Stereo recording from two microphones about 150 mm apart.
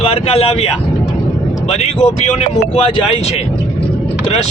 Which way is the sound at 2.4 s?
45° left (ahead or behind).